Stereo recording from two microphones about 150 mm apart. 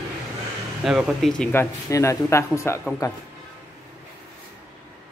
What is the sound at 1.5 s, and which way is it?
Speech, 20° left (ahead or behind).